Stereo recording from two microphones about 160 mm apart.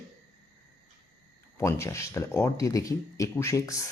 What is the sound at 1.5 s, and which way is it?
Speech, 15° left (ahead or behind).